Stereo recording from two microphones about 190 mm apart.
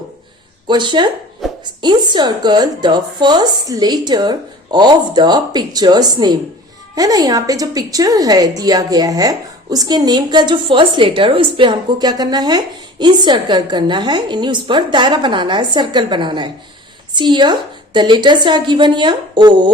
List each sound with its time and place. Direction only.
0.7 s a woman's voice: 25° right (ahead or behind)